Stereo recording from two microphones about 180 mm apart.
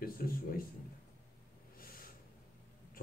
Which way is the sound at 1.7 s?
55° left (ahead or behind).